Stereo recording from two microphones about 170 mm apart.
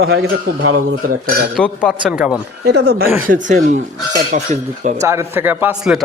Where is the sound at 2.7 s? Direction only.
75° right (ahead or behind).